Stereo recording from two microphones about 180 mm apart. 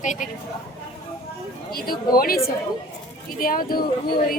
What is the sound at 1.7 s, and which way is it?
Speech, 55° left (ahead or behind).